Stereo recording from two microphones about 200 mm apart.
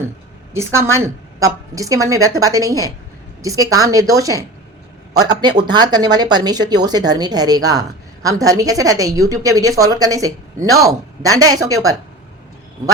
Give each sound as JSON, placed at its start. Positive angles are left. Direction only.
{"t": 0.5, "sound": "a woman's voice", "side_deg": -15}